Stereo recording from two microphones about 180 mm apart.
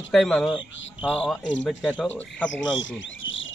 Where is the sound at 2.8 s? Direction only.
90° left.